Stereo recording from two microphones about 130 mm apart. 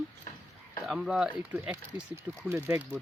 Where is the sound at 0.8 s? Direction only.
5° right (ahead or behind).